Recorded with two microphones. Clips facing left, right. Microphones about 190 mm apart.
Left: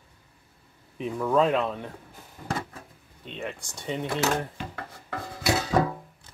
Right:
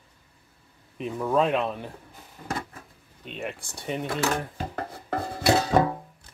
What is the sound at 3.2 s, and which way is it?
Speech, 5° right (ahead or behind).